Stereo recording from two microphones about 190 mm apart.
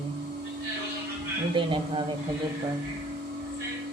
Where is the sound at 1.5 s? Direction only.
25° right (ahead or behind).